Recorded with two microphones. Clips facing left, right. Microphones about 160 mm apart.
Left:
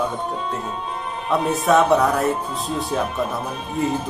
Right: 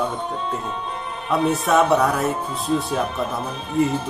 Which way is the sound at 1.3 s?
Centre (ahead or behind).